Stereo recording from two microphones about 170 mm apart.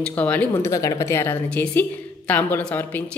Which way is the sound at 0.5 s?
20° left (ahead or behind).